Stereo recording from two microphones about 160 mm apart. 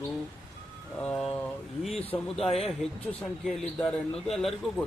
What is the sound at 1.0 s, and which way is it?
Speech, 5° left (ahead or behind).